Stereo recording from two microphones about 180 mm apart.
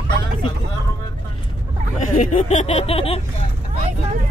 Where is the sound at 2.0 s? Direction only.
45° left (ahead or behind).